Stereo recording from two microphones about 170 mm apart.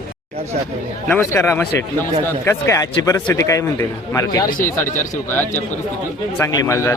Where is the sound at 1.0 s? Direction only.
15° left (ahead or behind).